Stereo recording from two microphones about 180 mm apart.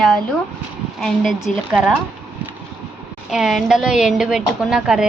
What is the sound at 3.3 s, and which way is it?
A woman's voice, centre (ahead or behind).